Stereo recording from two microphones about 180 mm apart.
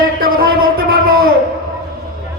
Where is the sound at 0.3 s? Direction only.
55° right (ahead or behind).